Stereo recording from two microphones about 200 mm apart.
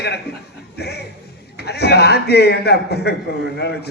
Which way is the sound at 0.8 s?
55° left (ahead or behind).